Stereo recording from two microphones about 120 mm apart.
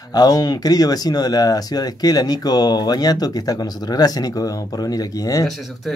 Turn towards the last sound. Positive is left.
turn(degrees=30)  # may be behind; listen again after turning